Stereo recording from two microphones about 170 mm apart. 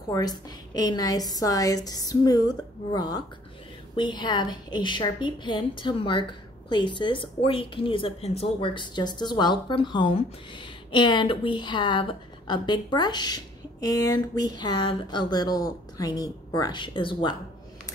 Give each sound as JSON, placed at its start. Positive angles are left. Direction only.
{"t": 0.1, "sound": "a woman's voice", "side_deg": 20}